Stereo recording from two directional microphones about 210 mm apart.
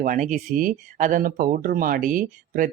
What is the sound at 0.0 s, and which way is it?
Speech, 35° right (ahead or behind).